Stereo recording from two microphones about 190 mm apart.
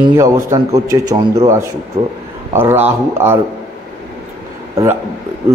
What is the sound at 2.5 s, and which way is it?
Speech, 10° right (ahead or behind).